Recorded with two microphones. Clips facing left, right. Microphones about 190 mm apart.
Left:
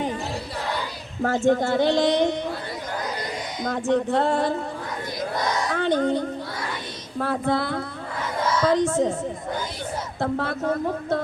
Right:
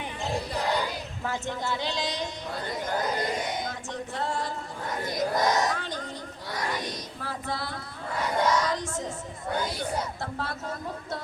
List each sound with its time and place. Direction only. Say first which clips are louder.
1.2 s a woman's voice: left 13 dB; 50° left (ahead or behind)
3.6 s speech: left 12 dB; 55° left (ahead or behind)
5.7 s speech: left 14 dB; 60° left (ahead or behind)
10.2 s speech: left 9 dB; 60° left (ahead or behind)